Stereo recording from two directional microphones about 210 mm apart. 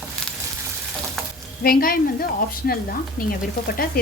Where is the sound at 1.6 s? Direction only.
45° left (ahead or behind).